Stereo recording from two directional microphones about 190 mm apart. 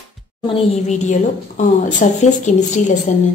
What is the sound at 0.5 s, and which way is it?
Speech, 40° left (ahead or behind).